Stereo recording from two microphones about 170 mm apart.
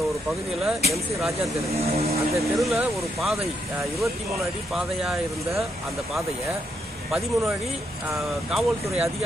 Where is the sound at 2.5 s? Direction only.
Centre (ahead or behind).